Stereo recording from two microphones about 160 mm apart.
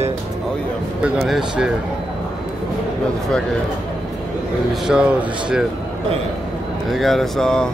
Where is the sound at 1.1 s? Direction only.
Centre (ahead or behind).